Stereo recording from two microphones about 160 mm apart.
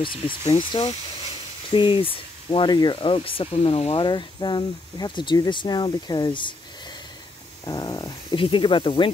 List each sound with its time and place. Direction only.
0.5 s speech: 30° left (ahead or behind)
7.6 s speech: 25° left (ahead or behind)